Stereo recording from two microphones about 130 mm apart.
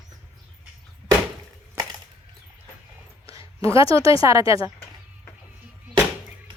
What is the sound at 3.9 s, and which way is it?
Speech, 25° right (ahead or behind).